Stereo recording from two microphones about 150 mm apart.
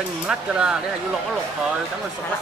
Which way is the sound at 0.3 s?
5° right (ahead or behind).